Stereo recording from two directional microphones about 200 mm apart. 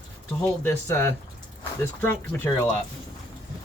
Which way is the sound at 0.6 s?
10° left (ahead or behind).